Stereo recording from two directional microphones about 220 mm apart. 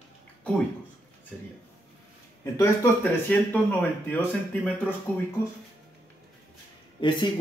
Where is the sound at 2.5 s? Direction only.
10° left (ahead or behind).